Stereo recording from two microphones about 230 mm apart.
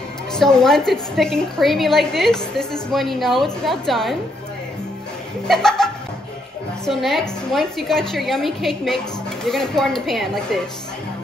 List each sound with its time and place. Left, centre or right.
0.3 s a woman's voice: centre
5.5 s a woman's voice: centre
6.9 s a woman's voice: centre